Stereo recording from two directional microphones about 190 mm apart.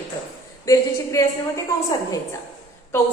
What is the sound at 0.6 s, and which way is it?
A woman's voice, 15° left (ahead or behind).